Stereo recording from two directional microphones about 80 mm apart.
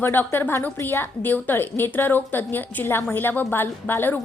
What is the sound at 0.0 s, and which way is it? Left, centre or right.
A woman's voice, left.